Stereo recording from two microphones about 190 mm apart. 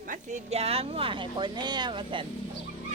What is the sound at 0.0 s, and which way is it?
Speech, 40° right (ahead or behind).